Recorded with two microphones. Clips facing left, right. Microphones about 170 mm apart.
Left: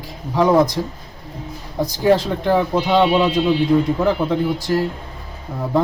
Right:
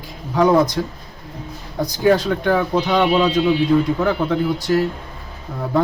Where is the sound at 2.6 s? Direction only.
20° left (ahead or behind).